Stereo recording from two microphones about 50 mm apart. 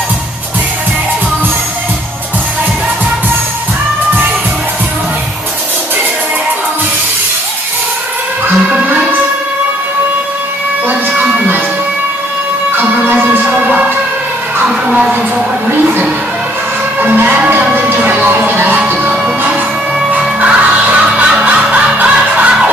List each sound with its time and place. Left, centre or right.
8.5 s music: right
10.9 s a sound: right
12.7 s music: right
13.5 s music: right
14.9 s a sound: centre
17.0 s music: right
18.8 s music: right
20.2 s music: right